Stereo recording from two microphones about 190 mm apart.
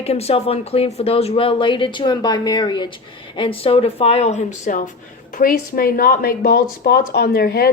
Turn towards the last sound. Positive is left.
turn(degrees=55)  # may be behind; listen again after turning